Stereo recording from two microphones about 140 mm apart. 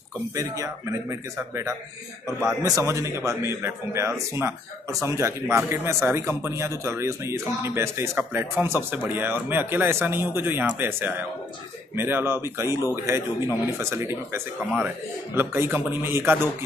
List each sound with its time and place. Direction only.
2.6 s a man's voice: 20° right (ahead or behind)